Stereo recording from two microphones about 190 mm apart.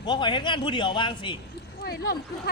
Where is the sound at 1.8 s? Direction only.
55° left (ahead or behind).